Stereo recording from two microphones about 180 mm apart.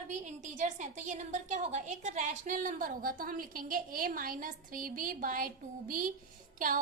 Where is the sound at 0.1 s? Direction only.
40° right (ahead or behind).